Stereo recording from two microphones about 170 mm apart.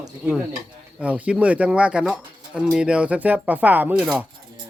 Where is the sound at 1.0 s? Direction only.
5° right (ahead or behind).